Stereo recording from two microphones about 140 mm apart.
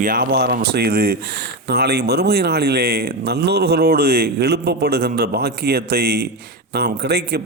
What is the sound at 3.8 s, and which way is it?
A man's voice, 90° right.